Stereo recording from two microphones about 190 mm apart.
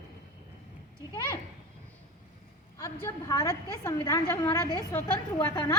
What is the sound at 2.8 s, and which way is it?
A woman's voice, 15° left (ahead or behind).